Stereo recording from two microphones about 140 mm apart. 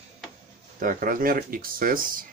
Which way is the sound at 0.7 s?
80° right.